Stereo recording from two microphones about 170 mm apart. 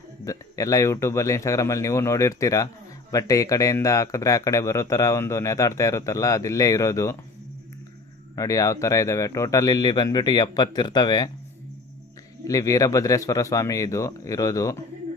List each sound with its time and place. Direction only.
0.3 s speech: 20° left (ahead or behind)
8.4 s speech: 20° left (ahead or behind)
12.5 s speech: 20° left (ahead or behind)